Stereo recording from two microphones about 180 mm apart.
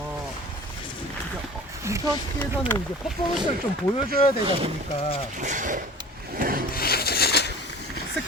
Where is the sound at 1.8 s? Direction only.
15° right (ahead or behind).